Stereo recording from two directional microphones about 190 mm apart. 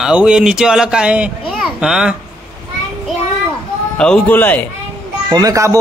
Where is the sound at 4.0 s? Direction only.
5° left (ahead or behind).